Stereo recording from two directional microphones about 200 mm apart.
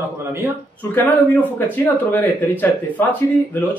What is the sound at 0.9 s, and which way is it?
Speech, 10° left (ahead or behind).